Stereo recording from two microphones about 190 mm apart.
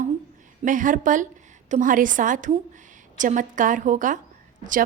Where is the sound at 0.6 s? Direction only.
45° right (ahead or behind).